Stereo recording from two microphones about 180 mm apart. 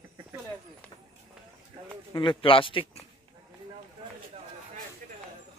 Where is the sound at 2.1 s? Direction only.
30° left (ahead or behind).